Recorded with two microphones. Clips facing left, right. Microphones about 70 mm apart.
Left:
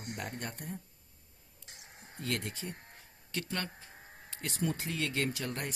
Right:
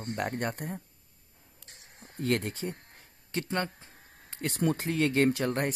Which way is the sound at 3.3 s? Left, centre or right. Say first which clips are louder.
Right 6 dB; right.